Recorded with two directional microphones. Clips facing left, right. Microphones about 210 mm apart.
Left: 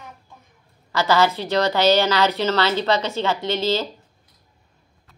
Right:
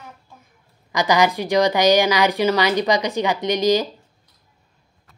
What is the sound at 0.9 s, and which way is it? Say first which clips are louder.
A woman's voice: right 1 dB; 15° right (ahead or behind).